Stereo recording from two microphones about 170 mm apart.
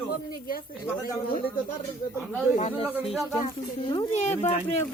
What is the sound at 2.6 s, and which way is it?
Speech, 35° left (ahead or behind).